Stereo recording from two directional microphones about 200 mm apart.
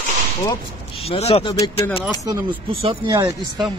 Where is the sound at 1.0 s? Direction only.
30° left (ahead or behind).